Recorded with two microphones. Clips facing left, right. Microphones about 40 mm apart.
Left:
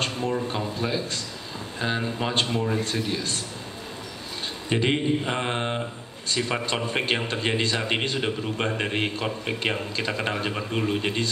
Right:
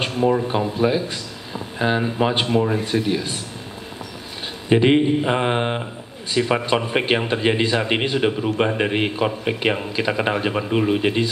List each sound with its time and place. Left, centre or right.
0.0 s speech: centre
4.6 s speech: centre